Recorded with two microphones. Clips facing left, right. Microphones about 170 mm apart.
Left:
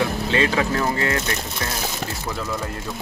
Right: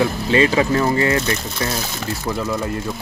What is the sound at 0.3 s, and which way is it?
Speech, 5° right (ahead or behind).